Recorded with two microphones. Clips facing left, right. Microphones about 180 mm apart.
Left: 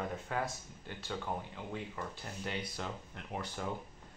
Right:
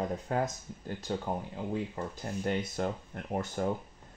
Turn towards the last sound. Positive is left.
turn(degrees=-45)  # may be behind; listen again after turning